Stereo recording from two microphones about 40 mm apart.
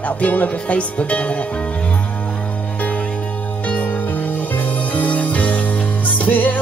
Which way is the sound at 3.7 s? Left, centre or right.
Left.